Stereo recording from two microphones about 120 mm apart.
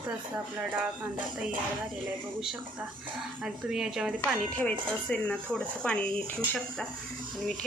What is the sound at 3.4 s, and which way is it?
Speech, 5° right (ahead or behind).